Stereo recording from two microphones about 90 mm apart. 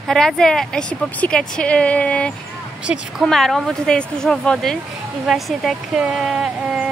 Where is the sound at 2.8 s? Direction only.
10° right (ahead or behind).